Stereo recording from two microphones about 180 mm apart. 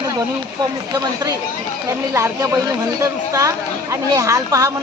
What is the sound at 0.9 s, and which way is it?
Speech, 20° right (ahead or behind).